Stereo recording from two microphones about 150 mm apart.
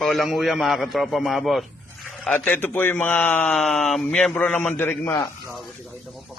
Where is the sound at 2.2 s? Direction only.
10° left (ahead or behind).